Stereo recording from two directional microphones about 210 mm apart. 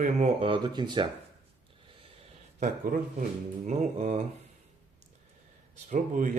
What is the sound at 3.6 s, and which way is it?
Speech, 30° right (ahead or behind).